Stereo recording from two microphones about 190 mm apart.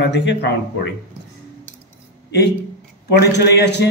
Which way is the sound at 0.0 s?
65° left (ahead or behind).